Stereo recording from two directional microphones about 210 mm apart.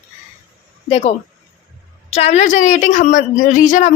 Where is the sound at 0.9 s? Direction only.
30° left (ahead or behind).